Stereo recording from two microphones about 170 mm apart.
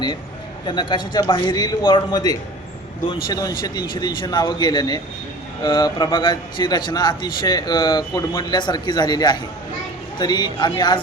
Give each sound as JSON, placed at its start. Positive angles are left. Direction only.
{"t": 0.7, "sound": "speech", "side_deg": 25}